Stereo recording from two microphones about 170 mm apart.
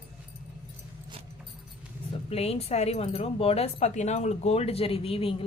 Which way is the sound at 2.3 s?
35° left (ahead or behind).